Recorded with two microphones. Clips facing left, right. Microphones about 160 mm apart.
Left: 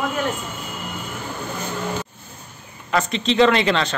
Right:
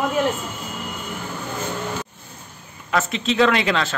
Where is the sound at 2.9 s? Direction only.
5° right (ahead or behind).